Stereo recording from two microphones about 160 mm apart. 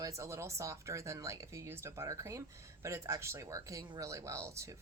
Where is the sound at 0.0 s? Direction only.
20° right (ahead or behind).